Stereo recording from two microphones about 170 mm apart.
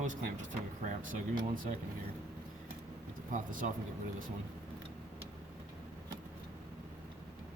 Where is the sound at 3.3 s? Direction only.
50° right (ahead or behind).